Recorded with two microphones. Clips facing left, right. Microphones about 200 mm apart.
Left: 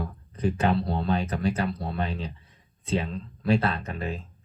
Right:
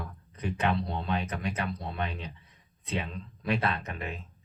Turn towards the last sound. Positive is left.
turn(degrees=30)  # may be behind; listen again after turning